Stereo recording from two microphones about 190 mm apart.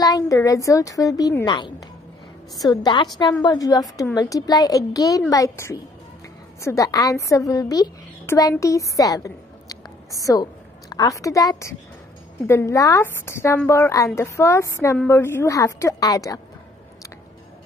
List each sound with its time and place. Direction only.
0.0 s a woman's voice: 20° left (ahead or behind)